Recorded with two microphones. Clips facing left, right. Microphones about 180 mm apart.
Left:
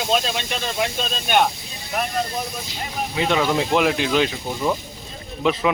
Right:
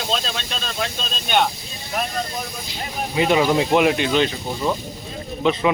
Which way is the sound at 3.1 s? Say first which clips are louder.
Right 3 dB; 10° right (ahead or behind).